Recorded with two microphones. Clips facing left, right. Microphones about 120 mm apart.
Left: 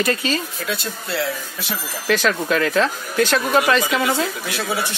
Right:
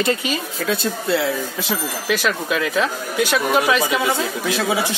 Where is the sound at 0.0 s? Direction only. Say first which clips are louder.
Even; 20° right (ahead or behind).